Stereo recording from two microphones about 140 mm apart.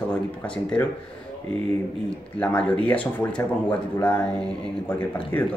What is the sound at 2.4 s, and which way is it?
Speech, 10° left (ahead or behind).